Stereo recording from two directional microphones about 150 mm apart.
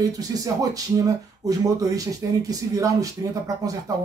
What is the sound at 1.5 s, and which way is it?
Speech, 25° right (ahead or behind).